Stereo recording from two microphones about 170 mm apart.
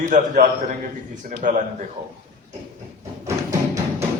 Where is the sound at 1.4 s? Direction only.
50° right (ahead or behind).